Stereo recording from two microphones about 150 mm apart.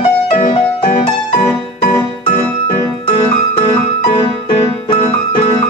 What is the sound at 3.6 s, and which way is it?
Piano, 40° left (ahead or behind).